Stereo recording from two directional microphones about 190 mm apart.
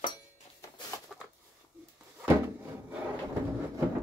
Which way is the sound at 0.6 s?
15° left (ahead or behind).